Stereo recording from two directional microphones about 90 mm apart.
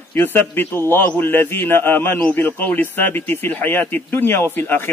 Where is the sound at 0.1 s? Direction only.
20° left (ahead or behind).